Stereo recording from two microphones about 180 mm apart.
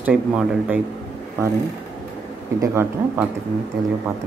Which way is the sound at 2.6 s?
15° right (ahead or behind).